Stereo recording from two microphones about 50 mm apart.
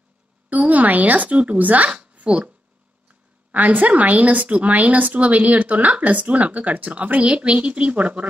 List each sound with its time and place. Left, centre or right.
0.5 s a woman's voice: right
3.5 s a woman's voice: right